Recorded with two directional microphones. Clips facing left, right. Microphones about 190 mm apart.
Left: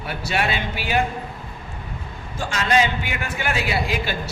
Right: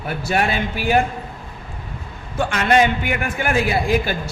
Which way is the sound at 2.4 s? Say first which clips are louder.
Right 4 dB; 55° right (ahead or behind).